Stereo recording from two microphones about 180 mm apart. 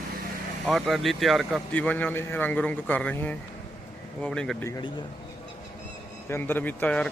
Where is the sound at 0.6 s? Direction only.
Centre (ahead or behind).